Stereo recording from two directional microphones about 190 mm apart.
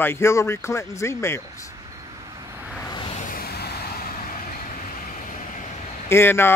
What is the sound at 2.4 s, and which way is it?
Vehicle, 10° right (ahead or behind).